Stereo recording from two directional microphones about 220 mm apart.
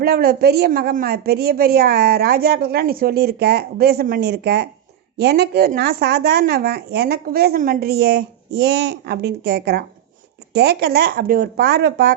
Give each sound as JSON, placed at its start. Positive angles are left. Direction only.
{"t": 0.0, "sound": "a woman's voice", "side_deg": -45}